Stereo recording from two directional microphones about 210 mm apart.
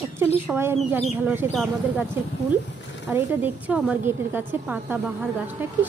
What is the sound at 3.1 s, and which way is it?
A woman's voice, 10° right (ahead or behind).